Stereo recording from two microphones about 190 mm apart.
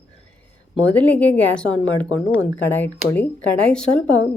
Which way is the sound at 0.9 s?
10° left (ahead or behind).